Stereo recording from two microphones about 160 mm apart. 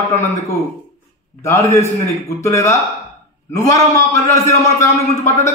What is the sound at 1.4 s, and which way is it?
A man's voice, 20° left (ahead or behind).